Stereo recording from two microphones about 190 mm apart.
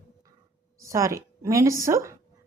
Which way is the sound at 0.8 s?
15° right (ahead or behind).